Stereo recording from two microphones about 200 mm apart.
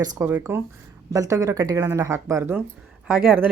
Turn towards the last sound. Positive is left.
turn(degrees=-5)  # may be behind; listen again after turning